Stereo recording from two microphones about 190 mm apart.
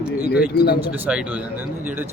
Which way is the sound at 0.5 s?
60° left (ahead or behind).